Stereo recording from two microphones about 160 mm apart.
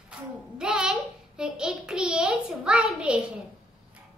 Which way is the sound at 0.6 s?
5° right (ahead or behind).